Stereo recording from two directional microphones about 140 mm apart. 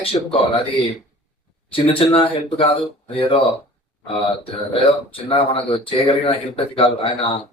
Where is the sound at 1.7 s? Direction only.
40° left (ahead or behind).